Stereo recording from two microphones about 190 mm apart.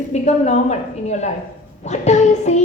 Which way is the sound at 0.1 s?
35° left (ahead or behind).